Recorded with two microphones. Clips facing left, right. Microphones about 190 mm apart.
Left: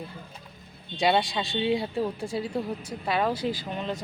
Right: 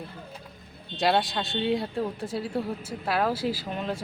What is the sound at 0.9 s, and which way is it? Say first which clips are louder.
A man's voice: even; centre (ahead or behind).